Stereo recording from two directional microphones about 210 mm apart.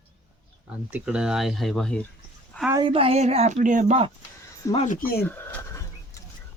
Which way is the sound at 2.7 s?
25° right (ahead or behind).